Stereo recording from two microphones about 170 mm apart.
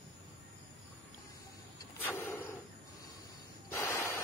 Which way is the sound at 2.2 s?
15° left (ahead or behind).